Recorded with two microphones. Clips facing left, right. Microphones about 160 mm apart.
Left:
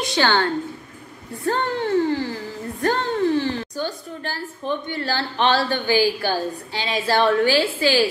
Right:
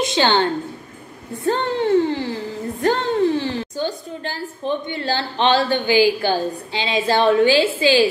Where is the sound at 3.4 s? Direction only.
20° right (ahead or behind).